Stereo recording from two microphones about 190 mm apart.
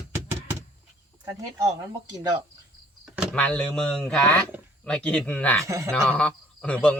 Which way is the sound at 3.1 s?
Centre (ahead or behind).